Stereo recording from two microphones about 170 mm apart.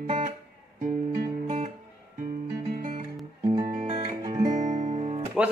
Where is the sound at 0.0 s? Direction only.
40° right (ahead or behind).